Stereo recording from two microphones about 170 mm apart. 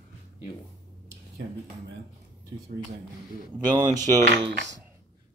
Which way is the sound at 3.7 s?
25° right (ahead or behind).